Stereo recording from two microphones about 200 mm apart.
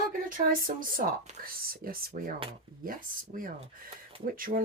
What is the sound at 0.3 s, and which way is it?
Speech, 45° right (ahead or behind).